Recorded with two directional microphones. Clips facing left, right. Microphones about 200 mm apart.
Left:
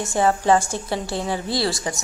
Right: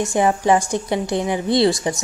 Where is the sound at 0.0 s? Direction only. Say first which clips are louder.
Right 2 dB; 15° right (ahead or behind).